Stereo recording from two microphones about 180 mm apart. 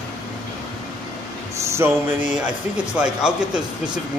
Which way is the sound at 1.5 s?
15° right (ahead or behind).